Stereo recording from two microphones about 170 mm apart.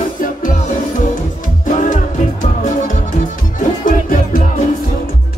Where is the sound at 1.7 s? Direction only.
50° left (ahead or behind).